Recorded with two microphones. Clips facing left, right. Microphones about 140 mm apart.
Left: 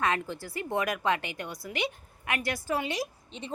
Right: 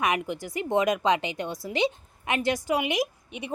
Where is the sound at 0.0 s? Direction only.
15° right (ahead or behind).